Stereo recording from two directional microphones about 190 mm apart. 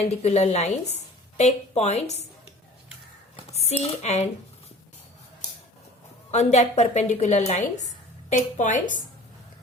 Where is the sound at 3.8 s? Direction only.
35° left (ahead or behind).